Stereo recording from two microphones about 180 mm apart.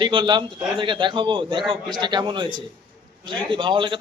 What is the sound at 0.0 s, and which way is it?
A man's voice, 25° right (ahead or behind).